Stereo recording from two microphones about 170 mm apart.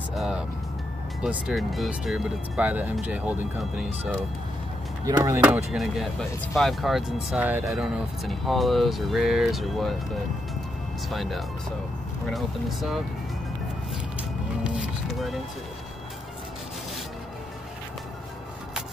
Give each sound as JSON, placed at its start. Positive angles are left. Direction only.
{"t": 0.1, "sound": "music", "side_deg": -5}
{"t": 1.2, "sound": "speech", "side_deg": 0}
{"t": 5.4, "sound": "speech", "side_deg": -5}
{"t": 7.8, "sound": "speech", "side_deg": 0}
{"t": 11.1, "sound": "speech", "side_deg": 0}
{"t": 14.6, "sound": "music", "side_deg": -5}